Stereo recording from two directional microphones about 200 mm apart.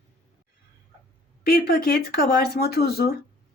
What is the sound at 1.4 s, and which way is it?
Speech, 50° left (ahead or behind).